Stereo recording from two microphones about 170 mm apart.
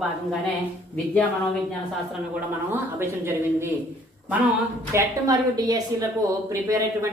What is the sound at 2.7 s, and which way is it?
Speech, 15° right (ahead or behind).